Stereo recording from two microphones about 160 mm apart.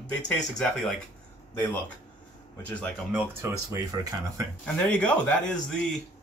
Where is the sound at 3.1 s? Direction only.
15° right (ahead or behind).